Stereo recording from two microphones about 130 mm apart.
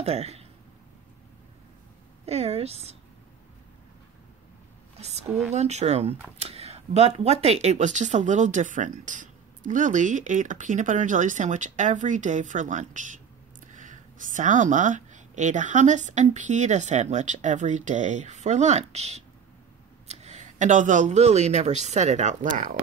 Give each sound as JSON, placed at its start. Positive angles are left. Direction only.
{"t": 0.0, "sound": "speech", "side_deg": -55}
{"t": 2.2, "sound": "a woman's voice", "side_deg": -55}
{"t": 5.5, "sound": "speech", "side_deg": -60}